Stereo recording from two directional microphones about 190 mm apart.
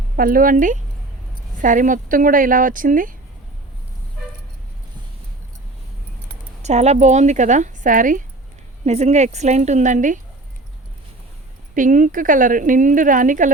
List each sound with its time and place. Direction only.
0.2 s speech: 50° right (ahead or behind)
6.6 s speech: 35° right (ahead or behind)
11.7 s speech: 45° right (ahead or behind)